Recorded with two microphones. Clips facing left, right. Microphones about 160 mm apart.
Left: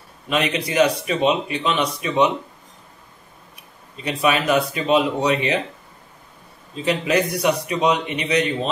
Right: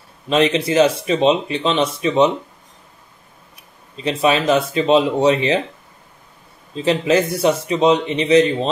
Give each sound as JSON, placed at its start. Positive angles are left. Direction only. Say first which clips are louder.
{"t": 0.3, "sound": "speech", "louder": "right 6 dB", "side_deg": -30}
{"t": 3.9, "sound": "speech", "louder": "right 3 dB", "side_deg": -25}
{"t": 6.7, "sound": "speech", "louder": "right 4 dB", "side_deg": -30}